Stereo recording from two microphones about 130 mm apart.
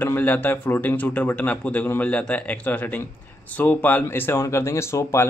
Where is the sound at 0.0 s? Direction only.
15° left (ahead or behind).